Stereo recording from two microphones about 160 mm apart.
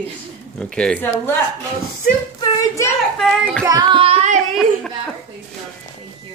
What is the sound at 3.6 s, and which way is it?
Singing, 25° right (ahead or behind).